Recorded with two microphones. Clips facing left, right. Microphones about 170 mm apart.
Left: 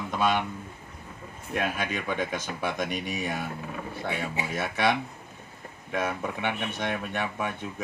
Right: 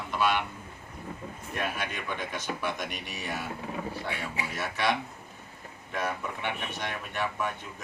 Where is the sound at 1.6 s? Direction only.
50° left (ahead or behind).